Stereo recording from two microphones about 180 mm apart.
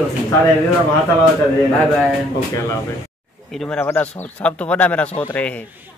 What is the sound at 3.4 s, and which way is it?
Speech, 5° left (ahead or behind).